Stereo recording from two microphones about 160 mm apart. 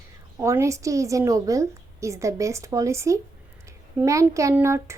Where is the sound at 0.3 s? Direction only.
20° right (ahead or behind).